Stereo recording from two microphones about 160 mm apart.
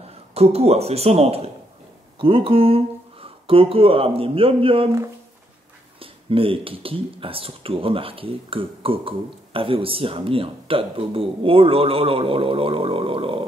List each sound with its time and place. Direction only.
0.0 s a man's voice: 40° right (ahead or behind)
5.9 s speech: 35° right (ahead or behind)